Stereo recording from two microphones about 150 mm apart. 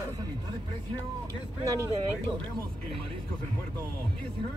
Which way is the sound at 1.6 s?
20° right (ahead or behind).